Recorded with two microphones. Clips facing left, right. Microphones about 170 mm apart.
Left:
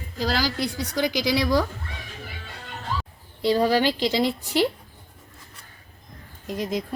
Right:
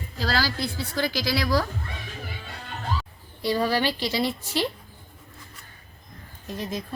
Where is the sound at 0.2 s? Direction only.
15° left (ahead or behind).